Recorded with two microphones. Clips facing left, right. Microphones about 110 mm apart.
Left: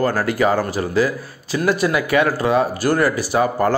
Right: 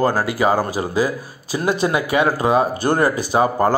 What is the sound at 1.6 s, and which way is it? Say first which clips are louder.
Speech: left 1 dB; 25° right (ahead or behind).